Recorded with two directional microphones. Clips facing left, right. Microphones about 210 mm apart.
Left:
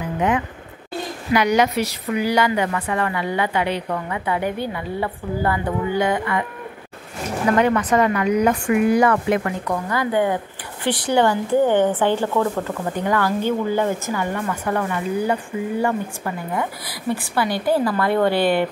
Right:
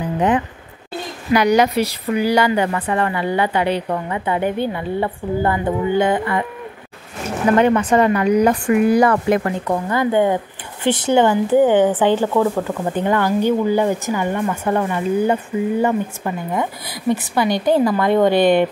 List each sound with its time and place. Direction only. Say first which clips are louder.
1.3 s speech: right 3 dB; 35° right (ahead or behind)
7.5 s speech: right 3 dB; 25° right (ahead or behind)